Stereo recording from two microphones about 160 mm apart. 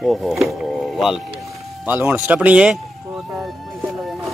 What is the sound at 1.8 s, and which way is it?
Speech, 10° right (ahead or behind).